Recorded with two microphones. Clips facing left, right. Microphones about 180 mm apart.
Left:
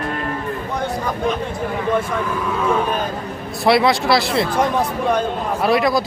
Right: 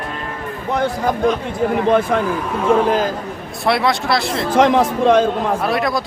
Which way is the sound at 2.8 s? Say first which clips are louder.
Right 5 dB; 90° right.